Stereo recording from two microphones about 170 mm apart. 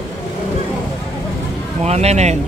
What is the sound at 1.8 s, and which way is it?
Speech, 40° right (ahead or behind).